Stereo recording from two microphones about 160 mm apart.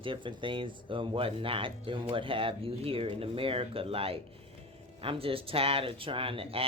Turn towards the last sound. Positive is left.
turn(degrees=-35)  # may be behind; listen again after turning